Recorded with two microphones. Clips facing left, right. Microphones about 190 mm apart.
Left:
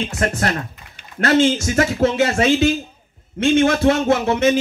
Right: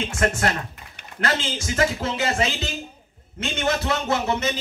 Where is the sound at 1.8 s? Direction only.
45° left (ahead or behind).